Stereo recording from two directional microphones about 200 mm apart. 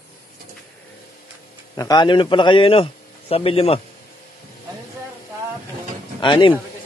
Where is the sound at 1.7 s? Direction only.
20° left (ahead or behind).